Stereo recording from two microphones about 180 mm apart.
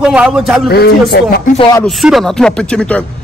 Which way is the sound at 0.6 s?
60° left (ahead or behind).